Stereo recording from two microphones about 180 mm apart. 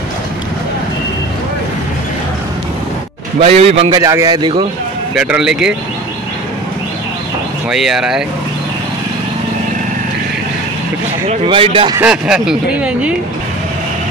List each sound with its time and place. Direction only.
3.3 s a man's voice: 35° right (ahead or behind)
3.9 s speech: 20° right (ahead or behind)
5.1 s speech: 5° right (ahead or behind)
7.7 s speech: 5° right (ahead or behind)
11.2 s speech: 30° right (ahead or behind)
12.0 s speech: 5° right (ahead or behind)